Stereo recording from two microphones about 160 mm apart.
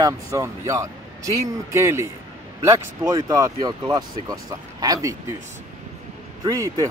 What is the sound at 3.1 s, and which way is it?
Speech, 20° right (ahead or behind).